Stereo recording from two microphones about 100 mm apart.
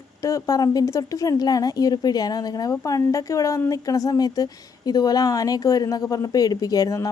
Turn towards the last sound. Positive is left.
turn(degrees=35)  # may be behind; listen again after turning